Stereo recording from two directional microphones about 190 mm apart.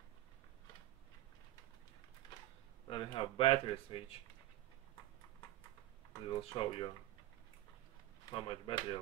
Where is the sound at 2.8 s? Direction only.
25° left (ahead or behind).